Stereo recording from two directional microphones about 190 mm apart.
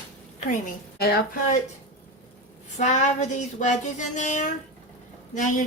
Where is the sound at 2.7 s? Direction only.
40° left (ahead or behind).